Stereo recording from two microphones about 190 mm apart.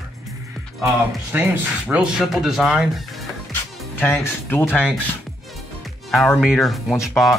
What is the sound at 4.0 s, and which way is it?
Speech, 15° left (ahead or behind).